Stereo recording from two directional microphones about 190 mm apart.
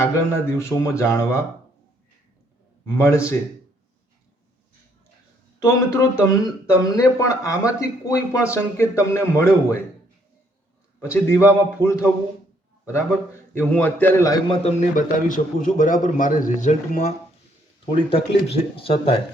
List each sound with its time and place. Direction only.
0.0 s speech: 15° left (ahead or behind)
3.0 s speech: 15° left (ahead or behind)
5.5 s speech: 15° left (ahead or behind)
11.0 s speech: 15° left (ahead or behind)
14.6 s a man's voice: 35° left (ahead or behind)